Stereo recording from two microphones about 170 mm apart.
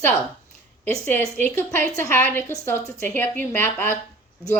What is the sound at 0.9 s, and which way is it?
A woman's voice, 10° left (ahead or behind).